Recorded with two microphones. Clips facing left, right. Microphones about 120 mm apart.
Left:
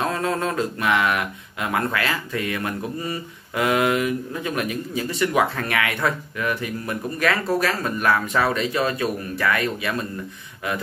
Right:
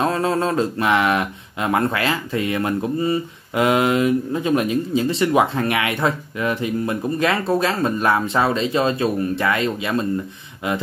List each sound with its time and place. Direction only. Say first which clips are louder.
0.0 s speech: right 4 dB; 30° right (ahead or behind)